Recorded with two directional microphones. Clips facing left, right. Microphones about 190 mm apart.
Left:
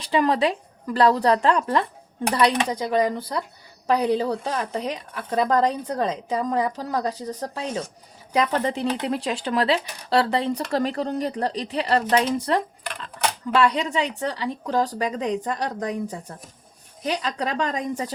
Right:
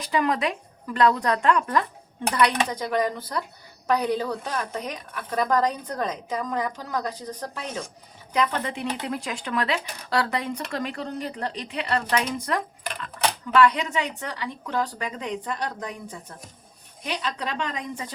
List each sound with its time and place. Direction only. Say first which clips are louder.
0.0 s a woman's voice: left 4 dB; 30° left (ahead or behind)